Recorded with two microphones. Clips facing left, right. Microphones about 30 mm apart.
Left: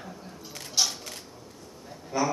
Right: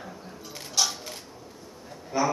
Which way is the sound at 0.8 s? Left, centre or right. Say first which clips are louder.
Right 1 dB; centre.